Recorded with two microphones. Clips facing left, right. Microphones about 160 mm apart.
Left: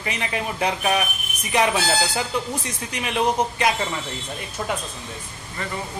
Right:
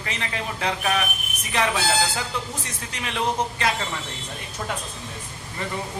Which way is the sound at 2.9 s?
15° left (ahead or behind).